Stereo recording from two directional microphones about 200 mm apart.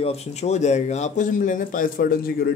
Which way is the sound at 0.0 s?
30° left (ahead or behind).